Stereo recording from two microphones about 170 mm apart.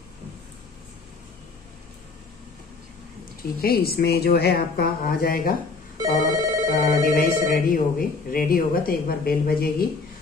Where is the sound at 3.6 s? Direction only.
65° left (ahead or behind).